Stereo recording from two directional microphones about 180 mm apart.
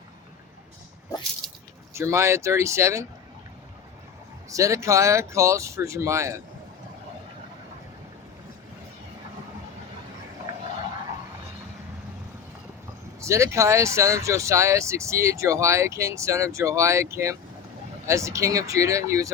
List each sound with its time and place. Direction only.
1.4 s squish: centre (ahead or behind)
1.9 s speech: 15° right (ahead or behind)
4.4 s speech: 15° right (ahead or behind)
13.2 s speech: 15° right (ahead or behind)